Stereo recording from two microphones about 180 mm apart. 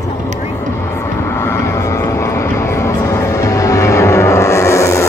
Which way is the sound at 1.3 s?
15° left (ahead or behind).